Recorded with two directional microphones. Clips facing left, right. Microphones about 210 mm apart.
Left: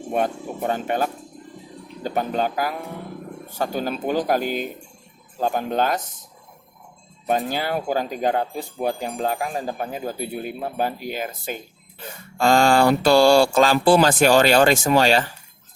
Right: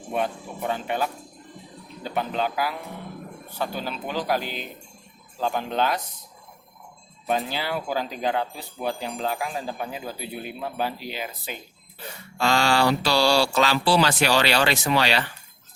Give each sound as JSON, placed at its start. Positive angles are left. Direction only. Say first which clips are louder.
{"t": 0.1, "sound": "speech", "louder": "left 4 dB", "side_deg": 45}
{"t": 7.3, "sound": "speech", "louder": "left 4 dB", "side_deg": 45}